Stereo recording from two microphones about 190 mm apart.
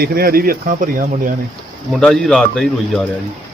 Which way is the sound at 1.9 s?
Centre (ahead or behind).